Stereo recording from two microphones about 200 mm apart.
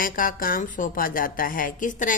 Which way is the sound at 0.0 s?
45° left (ahead or behind).